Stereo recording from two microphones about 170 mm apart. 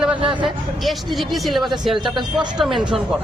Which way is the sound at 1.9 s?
25° right (ahead or behind).